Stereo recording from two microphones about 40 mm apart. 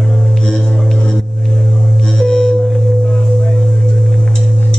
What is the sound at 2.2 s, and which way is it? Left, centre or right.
Music, centre.